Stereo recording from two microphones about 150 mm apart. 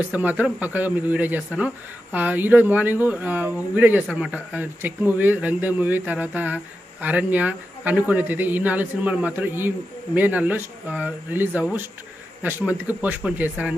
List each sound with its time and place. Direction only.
0.0 s speech: 10° right (ahead or behind)